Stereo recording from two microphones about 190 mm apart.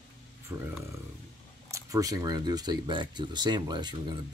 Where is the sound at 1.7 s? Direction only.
20° right (ahead or behind).